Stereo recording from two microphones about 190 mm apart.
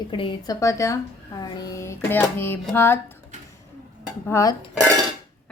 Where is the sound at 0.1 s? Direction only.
25° left (ahead or behind).